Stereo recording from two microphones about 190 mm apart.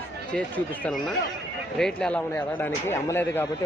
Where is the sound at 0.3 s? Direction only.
5° left (ahead or behind).